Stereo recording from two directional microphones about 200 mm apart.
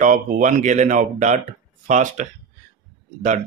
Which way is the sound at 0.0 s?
40° right (ahead or behind).